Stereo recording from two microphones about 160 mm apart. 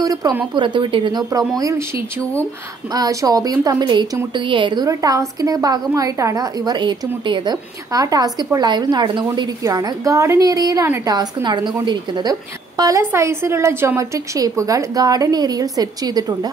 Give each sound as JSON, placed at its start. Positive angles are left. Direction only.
{"t": 0.0, "sound": "a woman's voice", "side_deg": -20}
{"t": 2.9, "sound": "a woman's voice", "side_deg": -20}